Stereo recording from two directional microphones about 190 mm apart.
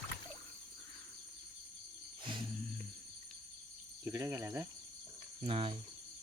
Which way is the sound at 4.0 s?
15° right (ahead or behind).